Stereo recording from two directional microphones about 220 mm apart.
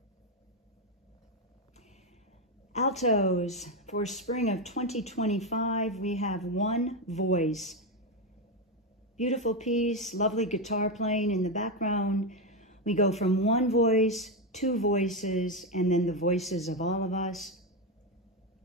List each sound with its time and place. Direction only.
2.7 s speech: 30° left (ahead or behind)
9.1 s speech: 30° left (ahead or behind)
12.4 s a sound: 30° left (ahead or behind)
13.2 s speech: 30° left (ahead or behind)
14.0 s speech: centre (ahead or behind)
14.5 s speech: 30° left (ahead or behind)
16.3 s speech: centre (ahead or behind)
16.6 s speech: 30° left (ahead or behind)
17.3 s a man's voice: centre (ahead or behind)